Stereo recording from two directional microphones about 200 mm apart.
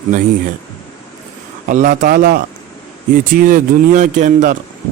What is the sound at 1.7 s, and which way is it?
Speech, 40° right (ahead or behind).